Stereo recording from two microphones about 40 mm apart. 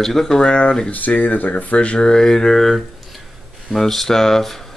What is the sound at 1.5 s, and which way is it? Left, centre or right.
Speech, left.